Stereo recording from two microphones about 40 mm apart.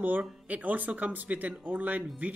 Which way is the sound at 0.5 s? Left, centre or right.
Right.